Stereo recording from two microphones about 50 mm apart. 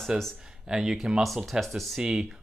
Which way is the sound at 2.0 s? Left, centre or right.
Centre.